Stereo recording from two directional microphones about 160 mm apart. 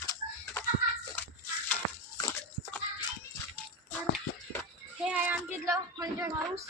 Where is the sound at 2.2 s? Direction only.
10° left (ahead or behind).